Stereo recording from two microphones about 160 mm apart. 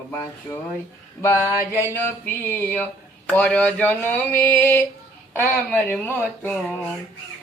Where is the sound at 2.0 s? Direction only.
15° left (ahead or behind).